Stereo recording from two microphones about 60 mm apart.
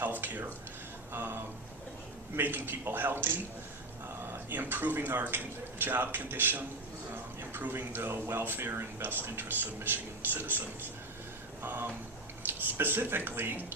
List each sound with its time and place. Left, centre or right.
0.0 s a sound: right
1.1 s speech: right
4.4 s speech: right
11.6 s speech: right